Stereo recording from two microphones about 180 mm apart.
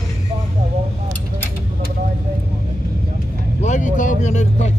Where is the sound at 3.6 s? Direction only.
45° left (ahead or behind).